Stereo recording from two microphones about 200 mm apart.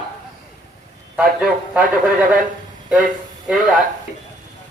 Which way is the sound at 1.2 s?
5° right (ahead or behind).